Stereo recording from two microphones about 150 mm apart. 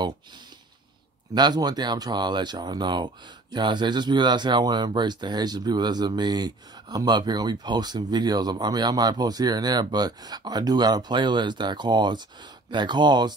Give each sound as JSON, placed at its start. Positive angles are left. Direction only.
{"t": 1.3, "sound": "speech", "side_deg": -25}